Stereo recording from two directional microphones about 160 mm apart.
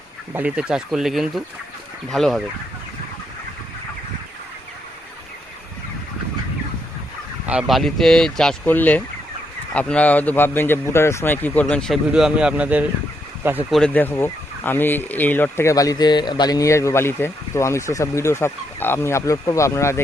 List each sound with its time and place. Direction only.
0.3 s speech: 5° right (ahead or behind)
7.4 s speech: 5° right (ahead or behind)
13.7 s speech: 5° left (ahead or behind)